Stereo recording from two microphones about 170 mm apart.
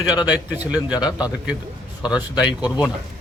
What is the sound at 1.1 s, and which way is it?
A man's voice, 5° right (ahead or behind).